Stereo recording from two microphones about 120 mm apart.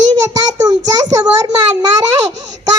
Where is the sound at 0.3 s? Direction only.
35° right (ahead or behind).